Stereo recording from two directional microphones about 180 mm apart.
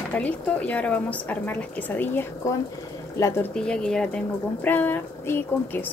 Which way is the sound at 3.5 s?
5° left (ahead or behind).